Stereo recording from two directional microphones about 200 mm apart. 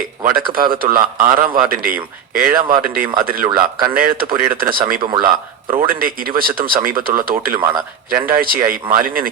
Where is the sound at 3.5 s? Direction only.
10° right (ahead or behind).